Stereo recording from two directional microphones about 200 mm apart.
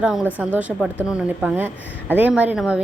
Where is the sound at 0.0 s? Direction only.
5° right (ahead or behind).